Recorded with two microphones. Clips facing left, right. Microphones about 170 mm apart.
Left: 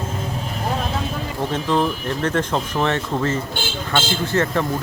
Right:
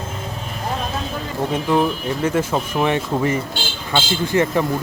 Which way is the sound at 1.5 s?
10° right (ahead or behind).